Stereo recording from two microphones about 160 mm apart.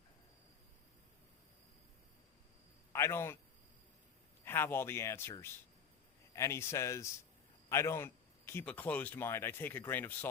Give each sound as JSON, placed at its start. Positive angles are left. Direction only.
{"t": 2.9, "sound": "a man's voice", "side_deg": 15}
{"t": 4.4, "sound": "speech", "side_deg": 15}